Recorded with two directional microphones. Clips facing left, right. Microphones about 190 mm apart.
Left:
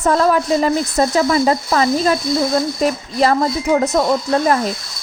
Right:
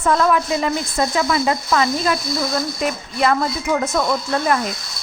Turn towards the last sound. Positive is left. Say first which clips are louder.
# left 4 dB
turn(degrees=35)  # may be behind; listen again after turning